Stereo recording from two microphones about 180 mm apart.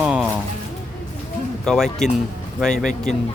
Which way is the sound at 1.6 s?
Centre (ahead or behind).